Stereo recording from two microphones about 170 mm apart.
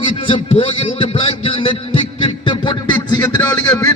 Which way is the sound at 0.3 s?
30° left (ahead or behind).